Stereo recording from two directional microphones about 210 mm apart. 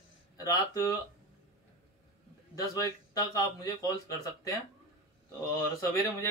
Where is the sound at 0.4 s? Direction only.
15° left (ahead or behind).